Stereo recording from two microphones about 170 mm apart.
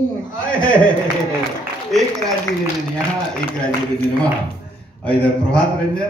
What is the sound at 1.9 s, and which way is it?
Speech, centre (ahead or behind).